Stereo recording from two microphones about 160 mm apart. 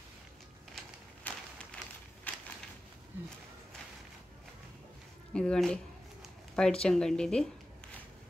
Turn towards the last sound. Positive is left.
turn(degrees=5)  # may be behind; listen again after turning